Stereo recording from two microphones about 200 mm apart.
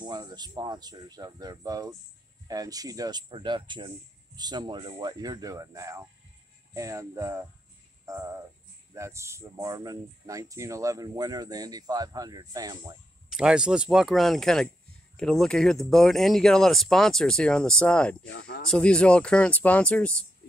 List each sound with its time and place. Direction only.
0.0 s speech: 20° right (ahead or behind)
8.0 s music: 15° right (ahead or behind)
8.9 s speech: 15° right (ahead or behind)
13.3 s speech: 5° right (ahead or behind)